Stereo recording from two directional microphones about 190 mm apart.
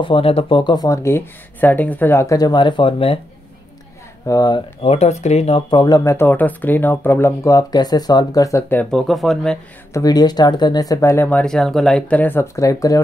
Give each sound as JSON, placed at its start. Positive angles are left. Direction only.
{"t": 0.0, "sound": "speech", "side_deg": 30}
{"t": 4.3, "sound": "speech", "side_deg": 20}
{"t": 4.8, "sound": "speech", "side_deg": 35}
{"t": 9.9, "sound": "speech", "side_deg": 20}